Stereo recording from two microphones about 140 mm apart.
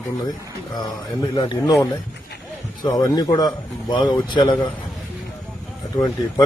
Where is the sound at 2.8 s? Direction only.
25° left (ahead or behind).